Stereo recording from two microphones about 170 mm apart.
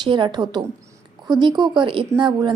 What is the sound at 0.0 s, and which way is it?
A woman's voice, 25° right (ahead or behind).